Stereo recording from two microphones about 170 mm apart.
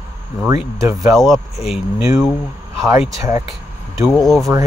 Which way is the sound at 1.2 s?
Centre (ahead or behind).